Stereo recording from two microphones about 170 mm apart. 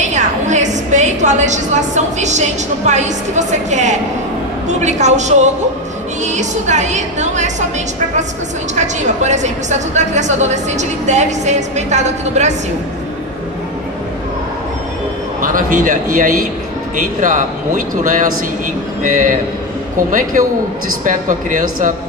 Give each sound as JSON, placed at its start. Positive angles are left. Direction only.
{"t": 0.0, "sound": "a sound", "side_deg": -45}
{"t": 2.9, "sound": "a woman's voice", "side_deg": -45}
{"t": 8.7, "sound": "a woman's voice", "side_deg": -45}
{"t": 15.4, "sound": "a woman's voice", "side_deg": -50}